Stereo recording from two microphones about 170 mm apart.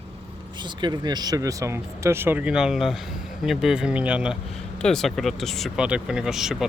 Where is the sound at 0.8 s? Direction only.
25° right (ahead or behind).